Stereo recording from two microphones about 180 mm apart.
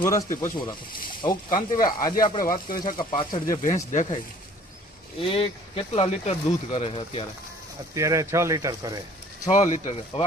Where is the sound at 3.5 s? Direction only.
45° left (ahead or behind).